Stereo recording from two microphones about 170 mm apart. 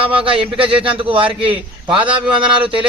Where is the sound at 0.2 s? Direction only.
30° right (ahead or behind).